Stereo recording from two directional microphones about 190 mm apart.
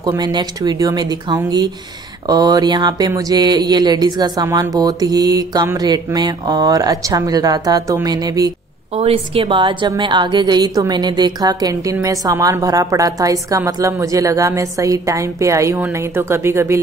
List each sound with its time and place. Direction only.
0.0 s speech: 20° right (ahead or behind)
8.9 s a woman's voice: 30° right (ahead or behind); by 16.8 s 15° right (ahead or behind)